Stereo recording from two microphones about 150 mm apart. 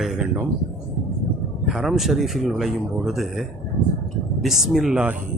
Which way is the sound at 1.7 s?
Centre (ahead or behind).